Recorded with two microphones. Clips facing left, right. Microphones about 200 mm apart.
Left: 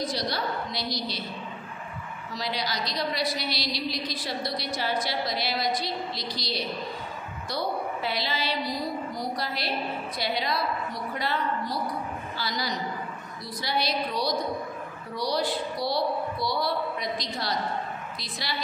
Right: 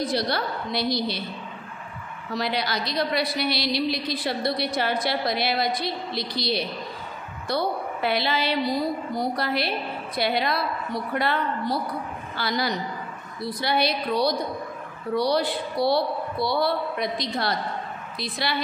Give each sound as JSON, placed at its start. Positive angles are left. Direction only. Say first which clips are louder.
{"t": 0.0, "sound": "a woman's voice", "louder": "right 4 dB", "side_deg": -60}
{"t": 2.3, "sound": "a woman's voice", "louder": "right 5 dB", "side_deg": -60}